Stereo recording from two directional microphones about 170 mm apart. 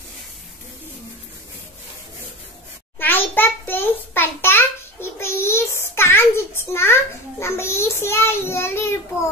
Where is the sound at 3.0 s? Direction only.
10° left (ahead or behind).